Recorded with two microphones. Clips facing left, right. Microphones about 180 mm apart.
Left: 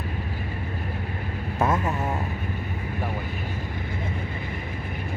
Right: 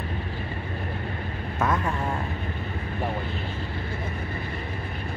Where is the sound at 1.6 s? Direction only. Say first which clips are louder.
Left 2 dB; 25° left (ahead or behind).